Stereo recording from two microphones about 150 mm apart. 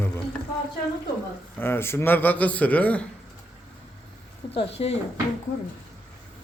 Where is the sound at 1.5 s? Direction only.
15° left (ahead or behind).